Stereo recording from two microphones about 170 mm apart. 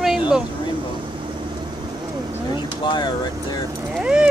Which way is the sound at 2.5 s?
25° left (ahead or behind).